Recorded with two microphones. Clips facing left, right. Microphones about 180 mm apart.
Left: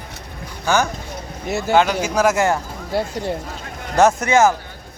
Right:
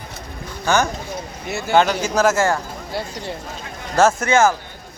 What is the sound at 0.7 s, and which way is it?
Speech, 10° left (ahead or behind).